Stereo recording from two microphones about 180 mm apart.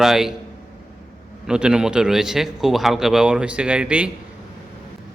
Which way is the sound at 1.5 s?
5° right (ahead or behind).